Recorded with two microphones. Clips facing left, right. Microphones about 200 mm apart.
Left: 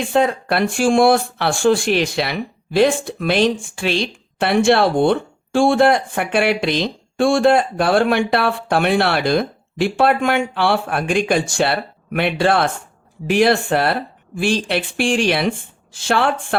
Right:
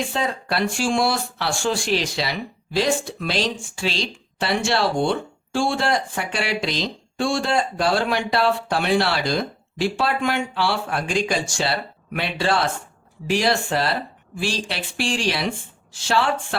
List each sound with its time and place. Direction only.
0.1 s speech: 55° left (ahead or behind)